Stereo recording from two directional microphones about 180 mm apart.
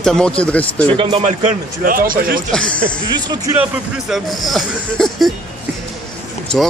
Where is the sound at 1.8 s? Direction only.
50° right (ahead or behind).